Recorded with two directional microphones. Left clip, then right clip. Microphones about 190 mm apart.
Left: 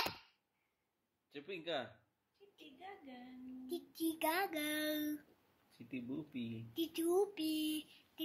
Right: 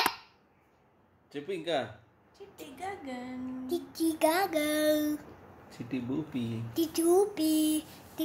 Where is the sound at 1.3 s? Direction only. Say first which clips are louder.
Right 10 dB; 30° left (ahead or behind).